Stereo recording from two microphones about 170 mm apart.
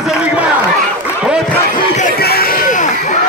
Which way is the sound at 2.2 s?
65° left (ahead or behind).